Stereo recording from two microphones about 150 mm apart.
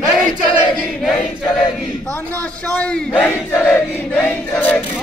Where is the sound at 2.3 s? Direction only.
10° left (ahead or behind).